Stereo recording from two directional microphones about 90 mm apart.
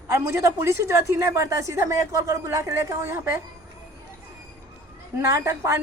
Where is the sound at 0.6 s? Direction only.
30° right (ahead or behind).